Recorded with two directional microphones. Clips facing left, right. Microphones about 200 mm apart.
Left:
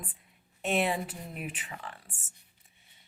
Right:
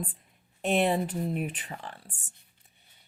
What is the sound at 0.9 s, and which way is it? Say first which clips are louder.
A woman's voice: right 6 dB; 35° right (ahead or behind).